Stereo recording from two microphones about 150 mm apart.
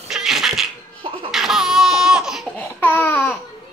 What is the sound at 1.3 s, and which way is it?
Laughter, centre (ahead or behind).